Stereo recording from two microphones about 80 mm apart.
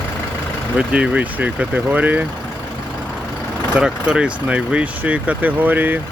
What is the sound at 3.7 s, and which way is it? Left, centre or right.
Speech, centre.